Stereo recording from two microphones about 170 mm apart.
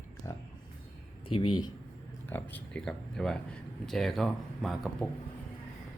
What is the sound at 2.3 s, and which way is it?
Speech, 10° left (ahead or behind).